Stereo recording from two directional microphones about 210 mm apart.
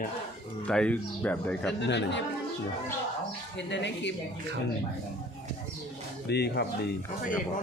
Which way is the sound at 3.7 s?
55° left (ahead or behind).